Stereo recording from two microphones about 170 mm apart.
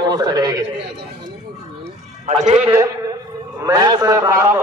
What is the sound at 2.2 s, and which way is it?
Speech, 40° right (ahead or behind).